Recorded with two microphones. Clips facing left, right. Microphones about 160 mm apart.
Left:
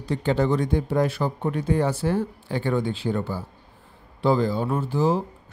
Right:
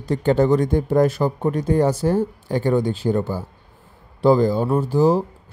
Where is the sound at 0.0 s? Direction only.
45° right (ahead or behind).